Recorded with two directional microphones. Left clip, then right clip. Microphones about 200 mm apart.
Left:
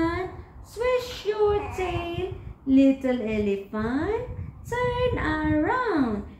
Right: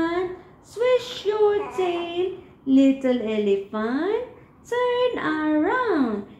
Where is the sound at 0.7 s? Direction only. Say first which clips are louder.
Right 4 dB; 10° left (ahead or behind).